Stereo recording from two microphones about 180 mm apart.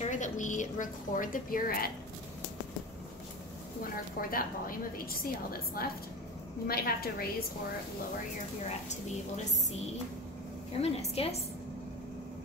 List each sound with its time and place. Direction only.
0.0 s a woman's voice: 45° left (ahead or behind)
4.2 s a woman's voice: 55° left (ahead or behind)
10.8 s a woman's voice: 35° left (ahead or behind)